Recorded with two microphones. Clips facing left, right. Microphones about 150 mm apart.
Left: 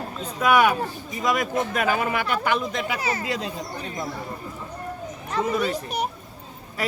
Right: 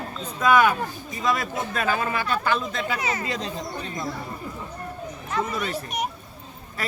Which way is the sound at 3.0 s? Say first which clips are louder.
Left 1 dB; 30° left (ahead or behind).